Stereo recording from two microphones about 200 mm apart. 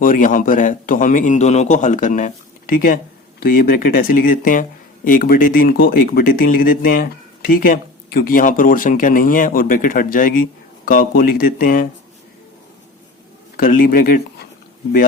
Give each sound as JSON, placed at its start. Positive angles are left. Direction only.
{"t": 0.0, "sound": "a man's voice", "side_deg": 40}
{"t": 13.6, "sound": "speech", "side_deg": 45}